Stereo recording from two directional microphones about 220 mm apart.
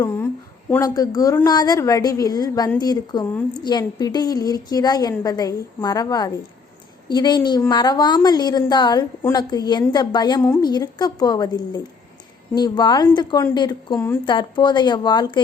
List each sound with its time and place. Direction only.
0.7 s a woman's voice: 15° left (ahead or behind)